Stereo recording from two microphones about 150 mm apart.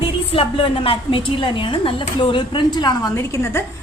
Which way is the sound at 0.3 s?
35° left (ahead or behind).